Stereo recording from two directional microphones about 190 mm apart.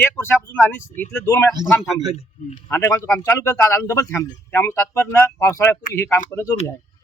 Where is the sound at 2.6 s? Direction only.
15° left (ahead or behind).